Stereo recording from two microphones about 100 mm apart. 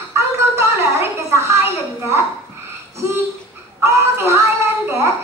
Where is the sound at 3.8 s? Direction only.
25° right (ahead or behind).